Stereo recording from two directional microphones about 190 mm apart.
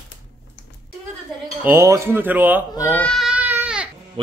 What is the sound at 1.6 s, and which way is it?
Speech, 15° right (ahead or behind).